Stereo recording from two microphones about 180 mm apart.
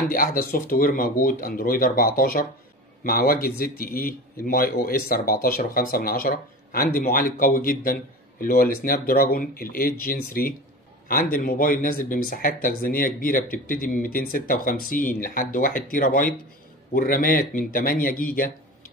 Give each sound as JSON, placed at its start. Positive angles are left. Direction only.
{"t": 0.1, "sound": "speech", "side_deg": 50}